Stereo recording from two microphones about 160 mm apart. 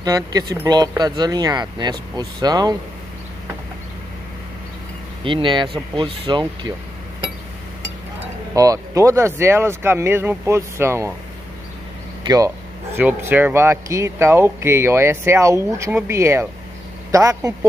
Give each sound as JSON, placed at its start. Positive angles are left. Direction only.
{"t": 0.0, "sound": "speech", "side_deg": -25}
{"t": 5.2, "sound": "speech", "side_deg": -30}
{"t": 8.5, "sound": "speech", "side_deg": -20}
{"t": 12.3, "sound": "speech", "side_deg": -20}